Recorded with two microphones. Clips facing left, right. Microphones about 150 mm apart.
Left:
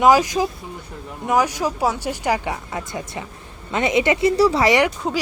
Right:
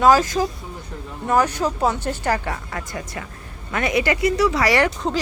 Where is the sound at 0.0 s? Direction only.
15° left (ahead or behind).